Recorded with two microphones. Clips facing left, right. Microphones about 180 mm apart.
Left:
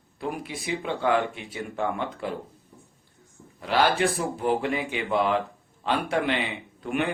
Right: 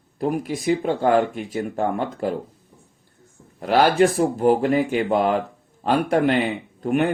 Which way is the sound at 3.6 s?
45° right (ahead or behind).